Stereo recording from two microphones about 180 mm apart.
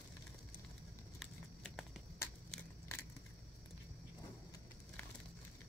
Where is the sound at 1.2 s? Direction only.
Centre (ahead or behind).